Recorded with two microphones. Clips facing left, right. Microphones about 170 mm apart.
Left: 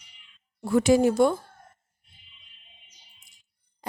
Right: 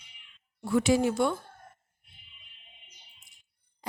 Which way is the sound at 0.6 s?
40° left (ahead or behind).